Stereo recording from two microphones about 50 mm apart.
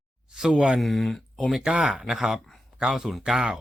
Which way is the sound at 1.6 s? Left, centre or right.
Centre.